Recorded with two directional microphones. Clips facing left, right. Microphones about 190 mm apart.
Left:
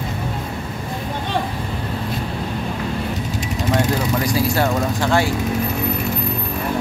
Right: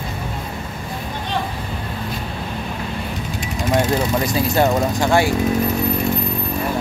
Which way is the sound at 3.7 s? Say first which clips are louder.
Right 2 dB; 25° right (ahead or behind).